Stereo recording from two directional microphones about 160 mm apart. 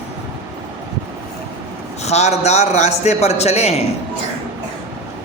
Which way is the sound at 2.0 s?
45° left (ahead or behind).